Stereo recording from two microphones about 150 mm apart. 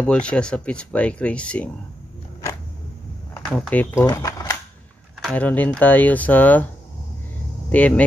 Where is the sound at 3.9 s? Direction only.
20° left (ahead or behind).